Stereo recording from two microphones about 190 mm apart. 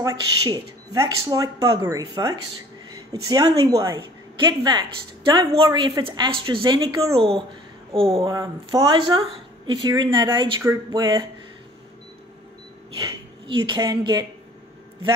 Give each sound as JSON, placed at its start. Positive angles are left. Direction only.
{"t": 0.0, "sound": "speech", "side_deg": -20}
{"t": 8.3, "sound": "speech", "side_deg": -20}
{"t": 13.0, "sound": "speech", "side_deg": -25}